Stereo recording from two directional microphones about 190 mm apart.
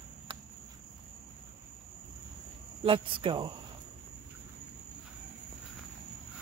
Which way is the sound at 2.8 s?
25° right (ahead or behind).